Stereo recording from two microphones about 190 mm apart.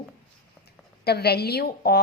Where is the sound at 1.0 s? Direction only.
55° left (ahead or behind).